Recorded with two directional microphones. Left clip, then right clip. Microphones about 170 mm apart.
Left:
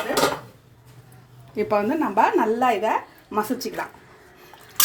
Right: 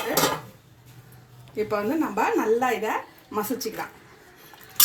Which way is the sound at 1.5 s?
75° left (ahead or behind).